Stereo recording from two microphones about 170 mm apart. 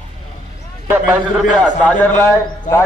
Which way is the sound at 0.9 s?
10° right (ahead or behind).